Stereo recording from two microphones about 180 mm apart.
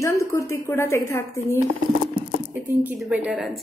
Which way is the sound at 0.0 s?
15° left (ahead or behind).